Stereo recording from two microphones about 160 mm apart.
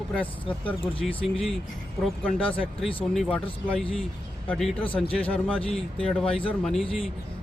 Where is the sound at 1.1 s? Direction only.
35° left (ahead or behind).